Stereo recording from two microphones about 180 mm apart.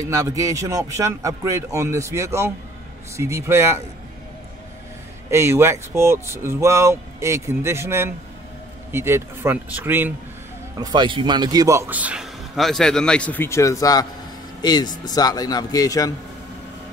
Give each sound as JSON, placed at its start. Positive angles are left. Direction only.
{"t": 0.0, "sound": "speech", "side_deg": -20}
{"t": 5.3, "sound": "speech", "side_deg": -15}
{"t": 10.8, "sound": "a man's voice", "side_deg": -25}